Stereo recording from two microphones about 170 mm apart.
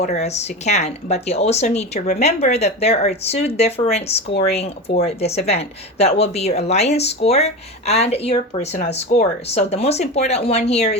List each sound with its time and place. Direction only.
0.0 s speech: 40° left (ahead or behind)